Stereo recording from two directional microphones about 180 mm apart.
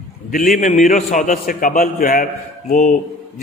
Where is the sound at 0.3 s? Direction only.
50° left (ahead or behind).